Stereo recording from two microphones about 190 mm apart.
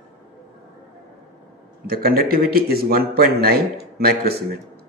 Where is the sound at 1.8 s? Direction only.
50° right (ahead or behind).